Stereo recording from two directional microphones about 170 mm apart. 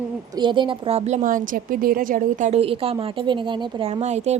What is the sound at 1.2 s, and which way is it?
A woman's voice, 55° right (ahead or behind).